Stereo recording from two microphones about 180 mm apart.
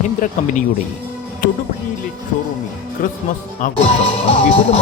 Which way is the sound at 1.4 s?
45° left (ahead or behind).